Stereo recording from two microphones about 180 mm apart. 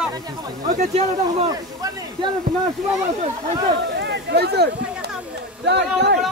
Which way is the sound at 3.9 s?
70° right (ahead or behind).